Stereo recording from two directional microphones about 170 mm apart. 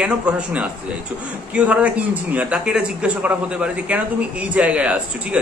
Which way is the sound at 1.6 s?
10° right (ahead or behind).